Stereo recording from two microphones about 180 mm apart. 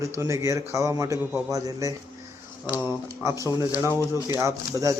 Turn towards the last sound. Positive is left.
turn(degrees=-15)  # may be behind; listen again after turning